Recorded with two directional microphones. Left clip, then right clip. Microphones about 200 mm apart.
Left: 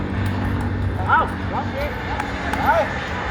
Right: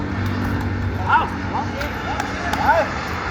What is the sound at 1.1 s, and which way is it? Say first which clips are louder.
Bow-wow: even; 55° right (ahead or behind).